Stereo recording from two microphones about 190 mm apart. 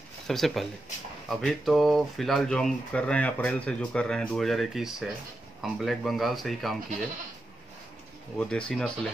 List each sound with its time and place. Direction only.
0.3 s speech: centre (ahead or behind)
8.4 s speech: 5° left (ahead or behind)